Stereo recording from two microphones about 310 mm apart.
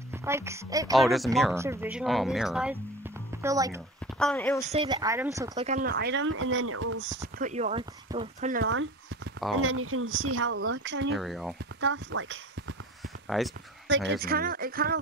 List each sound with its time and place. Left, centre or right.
0.1 s speech: centre
0.9 s speech: centre
4.2 s speech: centre
4.6 s speech: centre
5.7 s speech: right
7.2 s speech: right
8.6 s a sound: right
9.6 s speech: right
11.1 s speech: centre
11.8 s speech: right
13.0 s a sound: centre
13.8 s speech: right